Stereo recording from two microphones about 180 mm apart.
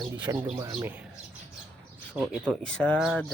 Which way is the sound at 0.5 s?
15° right (ahead or behind).